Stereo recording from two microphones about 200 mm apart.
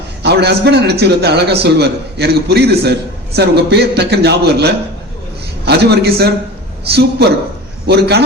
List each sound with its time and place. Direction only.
0.2 s a man's voice: 55° right (ahead or behind)